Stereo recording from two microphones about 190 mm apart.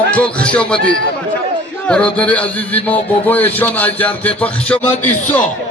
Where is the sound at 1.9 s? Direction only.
5° left (ahead or behind).